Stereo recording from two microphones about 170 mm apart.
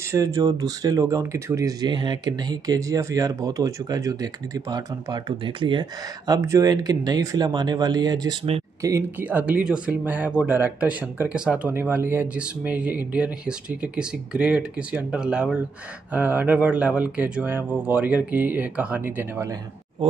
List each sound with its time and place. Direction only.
0.1 s speech: 20° right (ahead or behind)